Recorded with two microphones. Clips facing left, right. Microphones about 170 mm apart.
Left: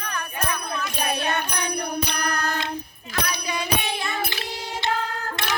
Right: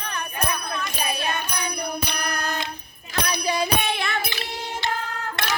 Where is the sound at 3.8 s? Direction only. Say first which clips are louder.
Right 2 dB; 70° right (ahead or behind).